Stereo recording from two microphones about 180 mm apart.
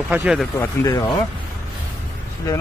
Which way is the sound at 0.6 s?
15° left (ahead or behind).